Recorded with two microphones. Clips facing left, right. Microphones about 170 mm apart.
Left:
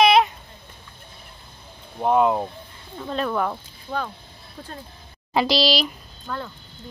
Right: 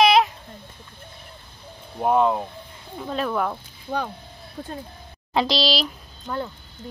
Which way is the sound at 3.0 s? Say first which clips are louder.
Even; 5° right (ahead or behind).